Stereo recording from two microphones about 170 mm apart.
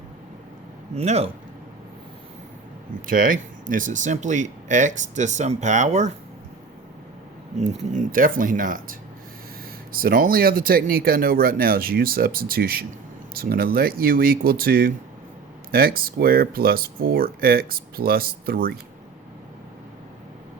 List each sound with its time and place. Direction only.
0.9 s a man's voice: 40° right (ahead or behind)
3.1 s speech: 55° right (ahead or behind)
7.6 s speech: 50° right (ahead or behind)